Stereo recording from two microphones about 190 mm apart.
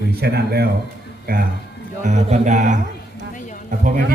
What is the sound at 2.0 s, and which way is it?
A man's voice, 40° right (ahead or behind).